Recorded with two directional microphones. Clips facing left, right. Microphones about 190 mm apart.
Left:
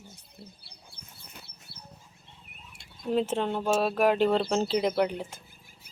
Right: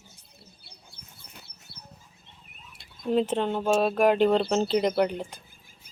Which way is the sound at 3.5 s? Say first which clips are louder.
Right 3 dB; centre (ahead or behind).